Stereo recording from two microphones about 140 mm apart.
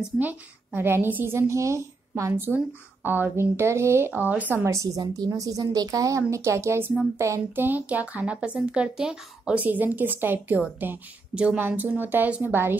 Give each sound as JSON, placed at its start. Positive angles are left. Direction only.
{"t": 0.0, "sound": "a woman's voice", "side_deg": -10}